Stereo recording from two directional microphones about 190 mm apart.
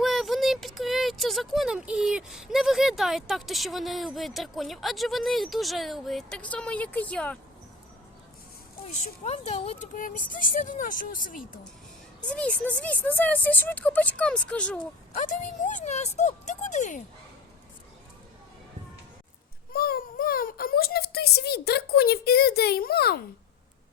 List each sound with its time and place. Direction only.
0.0 s speech: centre (ahead or behind)
9.2 s speech: 35° left (ahead or behind)
12.2 s speech: 5° left (ahead or behind)
15.1 s speech: 40° left (ahead or behind)
19.7 s a child's voice: 50° left (ahead or behind)